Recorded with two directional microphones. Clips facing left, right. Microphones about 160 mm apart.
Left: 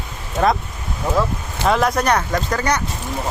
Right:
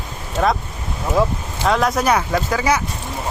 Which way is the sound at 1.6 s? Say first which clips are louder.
Even; centre (ahead or behind).